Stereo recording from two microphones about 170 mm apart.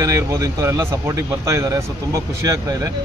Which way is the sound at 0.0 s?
20° right (ahead or behind).